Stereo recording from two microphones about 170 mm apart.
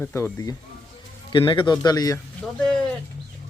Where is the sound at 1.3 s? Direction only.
30° left (ahead or behind).